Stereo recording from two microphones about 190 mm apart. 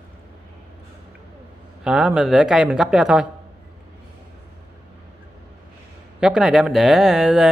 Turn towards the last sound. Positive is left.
turn(degrees=-5)  # may be behind; listen again after turning